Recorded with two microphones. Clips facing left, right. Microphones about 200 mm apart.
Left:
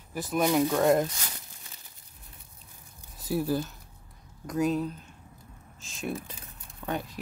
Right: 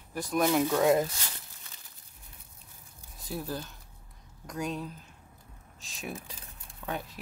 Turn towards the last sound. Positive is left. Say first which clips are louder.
# left 3 dB
turn(degrees=0)  # may be behind; listen again after turning